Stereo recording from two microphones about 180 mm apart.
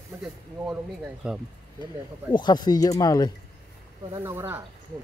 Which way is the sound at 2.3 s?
25° left (ahead or behind).